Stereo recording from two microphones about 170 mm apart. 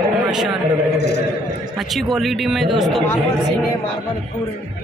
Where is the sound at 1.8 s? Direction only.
Centre (ahead or behind).